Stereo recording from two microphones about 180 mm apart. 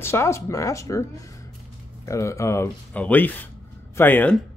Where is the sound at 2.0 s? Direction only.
15° left (ahead or behind).